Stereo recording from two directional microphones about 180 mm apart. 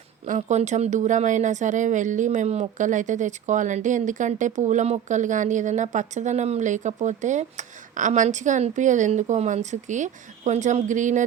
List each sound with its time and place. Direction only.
0.3 s speech: 40° right (ahead or behind)